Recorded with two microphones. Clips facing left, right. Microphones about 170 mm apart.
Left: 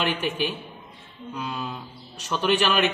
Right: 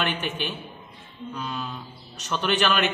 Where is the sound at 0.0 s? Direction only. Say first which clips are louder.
Left 3 dB; 10° left (ahead or behind).